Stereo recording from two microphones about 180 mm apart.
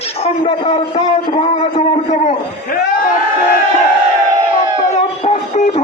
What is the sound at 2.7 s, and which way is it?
Speech, 55° left (ahead or behind).